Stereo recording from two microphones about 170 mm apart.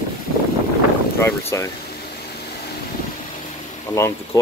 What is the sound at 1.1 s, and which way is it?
Speech, 15° left (ahead or behind).